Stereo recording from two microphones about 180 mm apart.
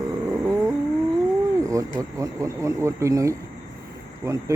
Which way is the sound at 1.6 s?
20° right (ahead or behind).